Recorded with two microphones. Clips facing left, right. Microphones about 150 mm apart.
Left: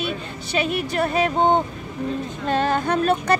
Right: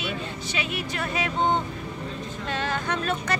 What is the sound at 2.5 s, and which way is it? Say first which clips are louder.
Speech: left 8 dB; 45° left (ahead or behind).